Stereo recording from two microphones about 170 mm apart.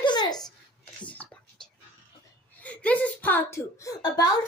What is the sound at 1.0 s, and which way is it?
Whispering, 10° left (ahead or behind).